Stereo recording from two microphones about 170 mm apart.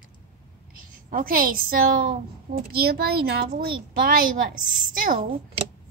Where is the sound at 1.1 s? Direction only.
55° right (ahead or behind).